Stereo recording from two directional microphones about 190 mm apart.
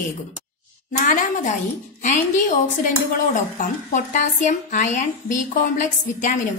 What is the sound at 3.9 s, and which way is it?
A woman's voice, 40° left (ahead or behind).